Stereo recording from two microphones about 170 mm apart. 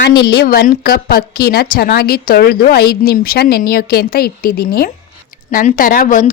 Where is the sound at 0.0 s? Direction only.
65° left (ahead or behind).